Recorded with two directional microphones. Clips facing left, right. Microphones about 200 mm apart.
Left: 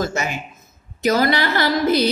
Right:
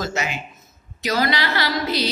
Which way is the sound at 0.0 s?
50° left (ahead or behind).